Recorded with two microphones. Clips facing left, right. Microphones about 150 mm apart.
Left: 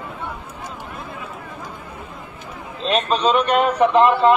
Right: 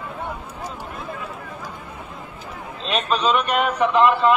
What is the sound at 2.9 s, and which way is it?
Speech, 40° left (ahead or behind).